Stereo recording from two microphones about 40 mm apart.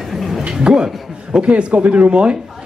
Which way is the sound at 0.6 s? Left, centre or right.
Right.